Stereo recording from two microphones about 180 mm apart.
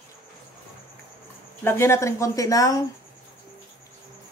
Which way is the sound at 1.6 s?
15° left (ahead or behind).